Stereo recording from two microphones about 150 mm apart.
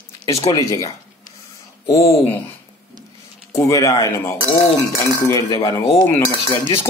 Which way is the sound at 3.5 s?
20° left (ahead or behind).